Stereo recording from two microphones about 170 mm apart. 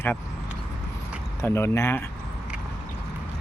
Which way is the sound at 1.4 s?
15° left (ahead or behind).